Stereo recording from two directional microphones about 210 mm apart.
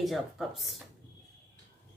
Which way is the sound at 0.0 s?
Centre (ahead or behind).